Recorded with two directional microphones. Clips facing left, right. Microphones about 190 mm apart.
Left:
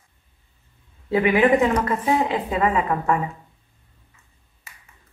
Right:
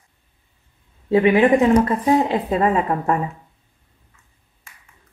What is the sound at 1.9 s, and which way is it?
A woman's voice, 35° right (ahead or behind).